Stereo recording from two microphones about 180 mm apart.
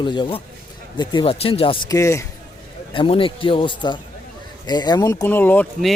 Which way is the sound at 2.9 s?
30° left (ahead or behind).